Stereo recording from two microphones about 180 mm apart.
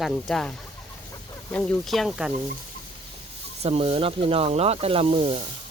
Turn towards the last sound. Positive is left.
turn(degrees=-35)  # may be behind; listen again after turning